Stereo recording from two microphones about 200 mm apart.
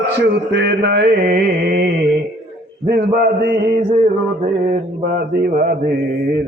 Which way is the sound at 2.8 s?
50° right (ahead or behind).